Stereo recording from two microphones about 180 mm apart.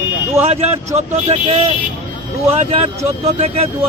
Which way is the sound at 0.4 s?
35° right (ahead or behind).